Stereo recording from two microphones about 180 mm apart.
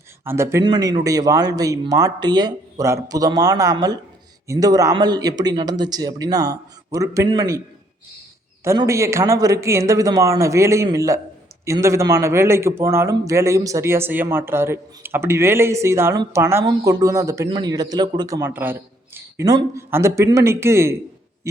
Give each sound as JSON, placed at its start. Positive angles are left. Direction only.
{"t": 0.3, "sound": "a man's voice", "side_deg": -15}
{"t": 8.6, "sound": "a man's voice", "side_deg": -15}